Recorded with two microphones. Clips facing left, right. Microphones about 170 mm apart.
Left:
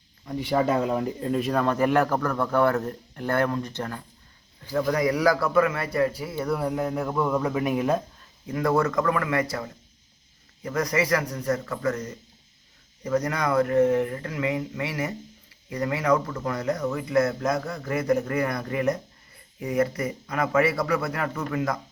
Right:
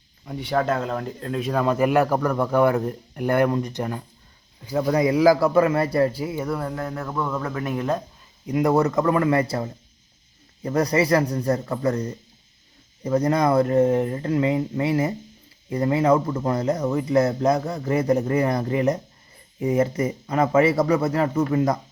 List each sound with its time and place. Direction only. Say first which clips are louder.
0.3 s speech: even; centre (ahead or behind); by 6.2 s 30° right (ahead or behind)
6.6 s speech: left 2 dB; 15° left (ahead or behind)
8.4 s speech: right 4 dB; 20° right (ahead or behind)